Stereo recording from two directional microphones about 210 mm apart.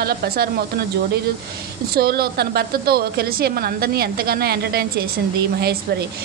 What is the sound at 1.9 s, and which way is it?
A woman's voice, 50° right (ahead or behind).